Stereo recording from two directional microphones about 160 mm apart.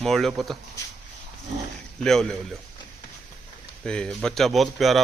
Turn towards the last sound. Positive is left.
turn(degrees=0)  # may be behind; listen again after turning